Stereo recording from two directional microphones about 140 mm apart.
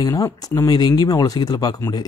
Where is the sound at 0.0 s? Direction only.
25° left (ahead or behind).